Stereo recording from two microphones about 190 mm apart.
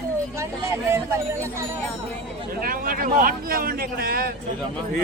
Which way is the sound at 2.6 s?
50° right (ahead or behind).